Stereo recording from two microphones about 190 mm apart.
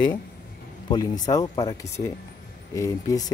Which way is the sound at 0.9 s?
20° left (ahead or behind).